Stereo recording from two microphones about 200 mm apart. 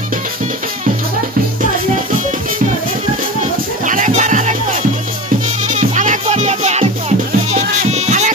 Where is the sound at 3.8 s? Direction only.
40° right (ahead or behind).